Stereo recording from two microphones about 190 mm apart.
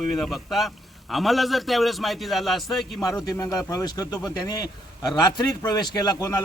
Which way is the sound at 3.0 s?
20° left (ahead or behind).